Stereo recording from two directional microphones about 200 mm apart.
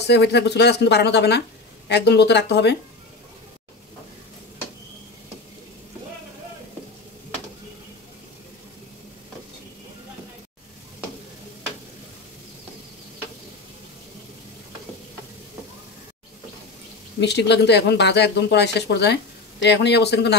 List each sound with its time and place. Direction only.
0.0 s speech: 60° left (ahead or behind)
17.2 s speech: 60° left (ahead or behind)